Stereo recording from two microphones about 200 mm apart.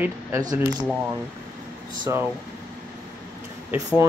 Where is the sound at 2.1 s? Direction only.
15° right (ahead or behind).